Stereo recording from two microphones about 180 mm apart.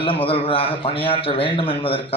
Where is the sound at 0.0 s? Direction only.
30° left (ahead or behind).